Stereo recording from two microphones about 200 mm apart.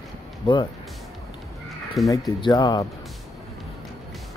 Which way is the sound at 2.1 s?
20° left (ahead or behind).